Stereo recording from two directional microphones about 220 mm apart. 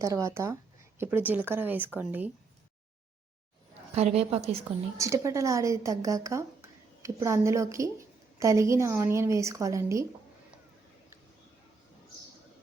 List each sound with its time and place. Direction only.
0.0 s a woman's voice: 15° right (ahead or behind)
3.9 s a woman's voice: 30° right (ahead or behind)
4.9 s a woman's voice: 15° right (ahead or behind)